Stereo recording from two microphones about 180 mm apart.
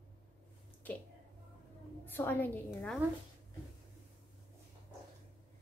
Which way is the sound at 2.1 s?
10° left (ahead or behind).